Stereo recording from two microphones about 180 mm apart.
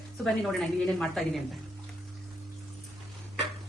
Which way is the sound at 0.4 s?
Centre (ahead or behind).